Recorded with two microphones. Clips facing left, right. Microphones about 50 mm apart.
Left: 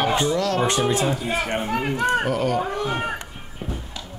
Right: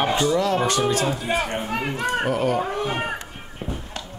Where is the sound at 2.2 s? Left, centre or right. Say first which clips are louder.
Even; right.